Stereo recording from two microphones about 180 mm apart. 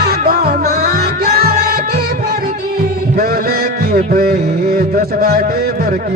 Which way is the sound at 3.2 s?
55° right (ahead or behind).